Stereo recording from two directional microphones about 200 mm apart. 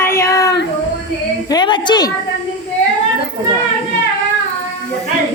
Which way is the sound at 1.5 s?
20° left (ahead or behind).